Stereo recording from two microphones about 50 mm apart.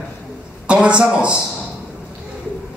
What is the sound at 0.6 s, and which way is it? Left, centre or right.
Speech, right.